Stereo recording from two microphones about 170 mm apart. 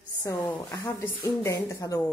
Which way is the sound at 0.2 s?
15° left (ahead or behind).